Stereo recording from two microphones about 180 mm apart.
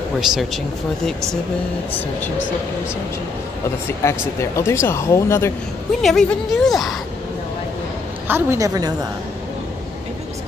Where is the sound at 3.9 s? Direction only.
15° left (ahead or behind).